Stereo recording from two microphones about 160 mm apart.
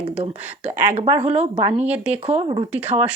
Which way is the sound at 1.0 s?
35° right (ahead or behind).